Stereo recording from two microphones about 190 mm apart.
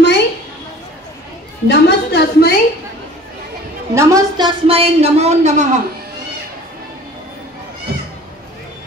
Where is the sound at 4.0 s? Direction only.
15° right (ahead or behind); by 5.6 s 35° right (ahead or behind).